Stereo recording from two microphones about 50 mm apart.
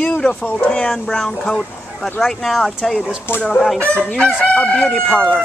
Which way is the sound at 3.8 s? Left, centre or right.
Left.